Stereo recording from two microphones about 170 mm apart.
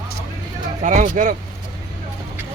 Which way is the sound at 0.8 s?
50° right (ahead or behind).